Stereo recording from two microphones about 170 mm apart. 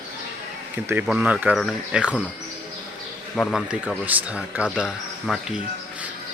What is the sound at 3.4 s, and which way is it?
Speech, centre (ahead or behind).